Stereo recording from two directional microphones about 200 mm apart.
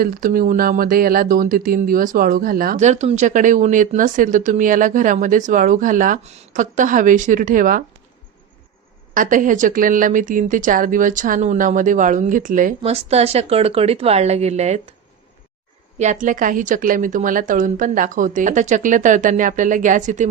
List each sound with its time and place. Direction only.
0.0 s speech: 45° right (ahead or behind)
9.1 s speech: 40° right (ahead or behind)
16.0 s speech: 40° right (ahead or behind)